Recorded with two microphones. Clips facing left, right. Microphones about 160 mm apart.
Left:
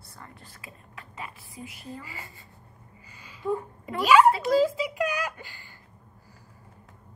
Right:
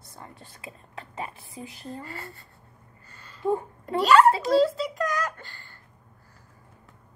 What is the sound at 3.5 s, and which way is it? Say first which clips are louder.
Speech: right 3 dB; 30° right (ahead or behind).